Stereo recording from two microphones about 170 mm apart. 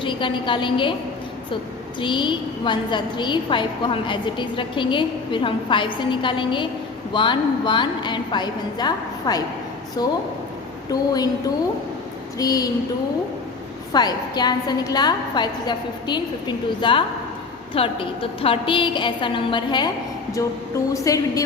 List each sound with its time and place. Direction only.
0.0 s a woman's voice: 30° left (ahead or behind)
2.0 s a woman's voice: 30° left (ahead or behind)
13.9 s a woman's voice: 25° left (ahead or behind)
20.9 s a woman's voice: 20° left (ahead or behind)